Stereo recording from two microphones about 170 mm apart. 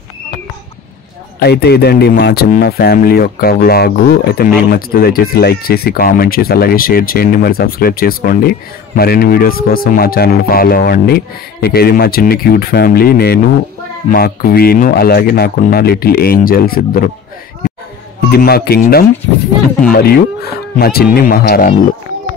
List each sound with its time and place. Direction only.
1.4 s speech: 70° left (ahead or behind)
18.3 s speech: 65° left (ahead or behind)